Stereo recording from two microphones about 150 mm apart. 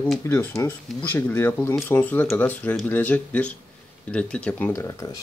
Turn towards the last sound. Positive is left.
turn(degrees=20)  # may be behind; listen again after turning